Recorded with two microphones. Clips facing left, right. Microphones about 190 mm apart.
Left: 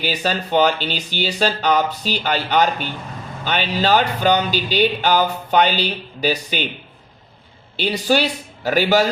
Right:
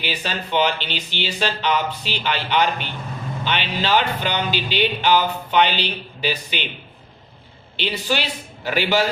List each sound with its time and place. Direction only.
0.0 s speech: 40° left (ahead or behind)
7.8 s speech: 40° left (ahead or behind)